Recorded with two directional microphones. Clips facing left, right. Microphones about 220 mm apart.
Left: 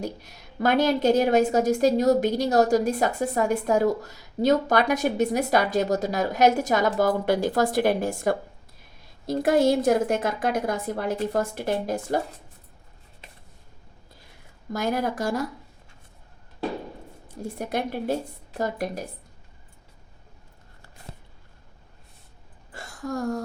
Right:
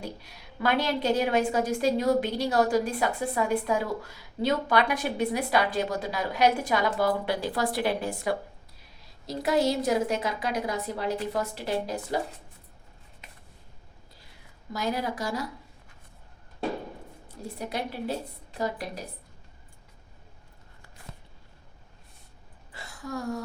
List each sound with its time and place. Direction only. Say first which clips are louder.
0.0 s a woman's voice: left 6 dB; 45° left (ahead or behind)
14.7 s a woman's voice: left 4 dB; 50° left (ahead or behind)
17.3 s a woman's voice: left 5 dB; 50° left (ahead or behind)
22.7 s a sound: left 5 dB; 45° left (ahead or behind)